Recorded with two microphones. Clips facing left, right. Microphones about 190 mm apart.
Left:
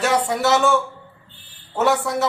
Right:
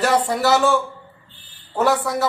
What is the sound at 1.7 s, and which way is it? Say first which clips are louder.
Speech: even; centre (ahead or behind).